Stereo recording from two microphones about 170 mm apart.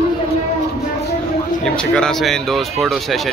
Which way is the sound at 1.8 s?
5° left (ahead or behind).